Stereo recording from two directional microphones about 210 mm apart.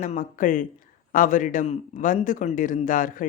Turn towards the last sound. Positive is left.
turn(degrees=40)  # may be behind; listen again after turning